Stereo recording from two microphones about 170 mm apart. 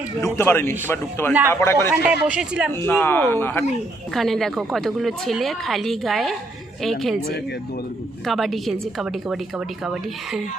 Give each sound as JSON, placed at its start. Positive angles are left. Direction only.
{"t": 0.3, "sound": "a man's voice", "side_deg": 15}
{"t": 1.9, "sound": "speech", "side_deg": -5}
{"t": 2.8, "sound": "a man's voice", "side_deg": 10}
{"t": 4.1, "sound": "a woman's voice", "side_deg": 0}
{"t": 8.3, "sound": "a woman's voice", "side_deg": 0}